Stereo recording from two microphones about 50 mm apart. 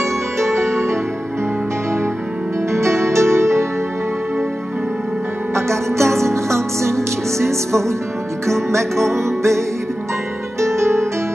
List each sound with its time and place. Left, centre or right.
0.0 s music: right
2.7 s music: right
5.5 s music: right
9.0 s music: right
10.6 s music: right